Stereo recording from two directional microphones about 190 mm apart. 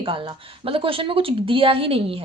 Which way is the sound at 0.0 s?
25° right (ahead or behind).